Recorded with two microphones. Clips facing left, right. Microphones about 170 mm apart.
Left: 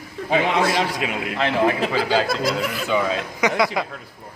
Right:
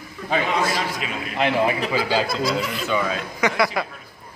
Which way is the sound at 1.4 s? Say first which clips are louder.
Even; 15° right (ahead or behind).